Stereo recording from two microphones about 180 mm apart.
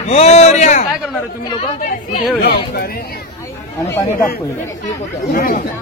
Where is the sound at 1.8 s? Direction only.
55° left (ahead or behind).